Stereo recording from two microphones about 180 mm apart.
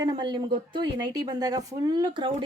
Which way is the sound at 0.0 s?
25° right (ahead or behind).